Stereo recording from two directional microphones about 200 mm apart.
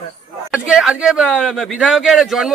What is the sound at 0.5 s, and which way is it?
A man's voice, 5° right (ahead or behind).